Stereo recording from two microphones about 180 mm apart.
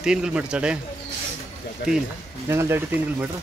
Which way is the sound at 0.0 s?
5° right (ahead or behind).